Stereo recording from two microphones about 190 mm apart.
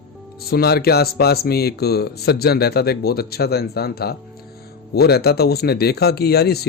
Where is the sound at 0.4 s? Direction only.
55° left (ahead or behind).